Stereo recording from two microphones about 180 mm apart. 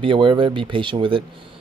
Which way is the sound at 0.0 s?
30° right (ahead or behind).